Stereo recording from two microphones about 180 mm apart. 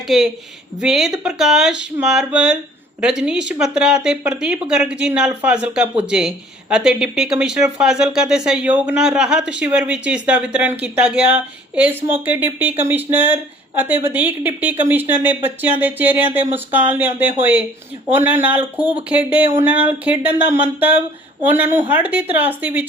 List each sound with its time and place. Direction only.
0.8 s speech: centre (ahead or behind)
19.6 s speech: 30° left (ahead or behind)
19.9 s speech: 10° right (ahead or behind)